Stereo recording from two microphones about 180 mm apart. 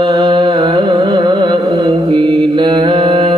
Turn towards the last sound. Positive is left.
turn(degrees=-25)  # may be behind; listen again after turning